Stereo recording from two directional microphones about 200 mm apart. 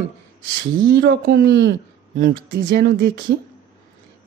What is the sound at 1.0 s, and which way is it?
Speech, 55° right (ahead or behind).